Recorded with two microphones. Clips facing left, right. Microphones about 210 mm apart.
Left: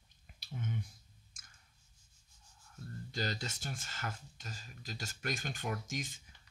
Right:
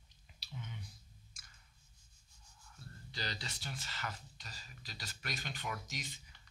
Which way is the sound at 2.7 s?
45° left (ahead or behind).